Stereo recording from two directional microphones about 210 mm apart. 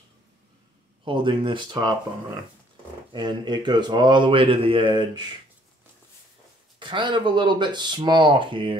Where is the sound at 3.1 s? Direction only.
20° right (ahead or behind).